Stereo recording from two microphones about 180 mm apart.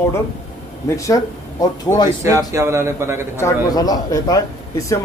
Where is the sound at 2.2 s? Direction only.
15° right (ahead or behind).